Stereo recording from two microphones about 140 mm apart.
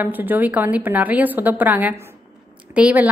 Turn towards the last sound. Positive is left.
turn(degrees=-10)  # may be behind; listen again after turning